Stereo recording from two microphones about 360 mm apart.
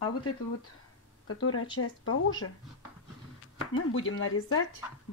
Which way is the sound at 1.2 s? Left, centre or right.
Left.